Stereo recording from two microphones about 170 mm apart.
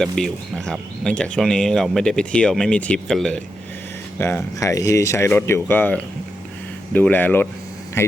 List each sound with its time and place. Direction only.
0.0 s speech: 5° left (ahead or behind)
4.2 s speech: 15° left (ahead or behind)